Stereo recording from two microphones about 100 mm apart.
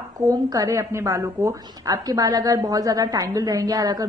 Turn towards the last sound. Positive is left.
turn(degrees=-40)  # may be behind; listen again after turning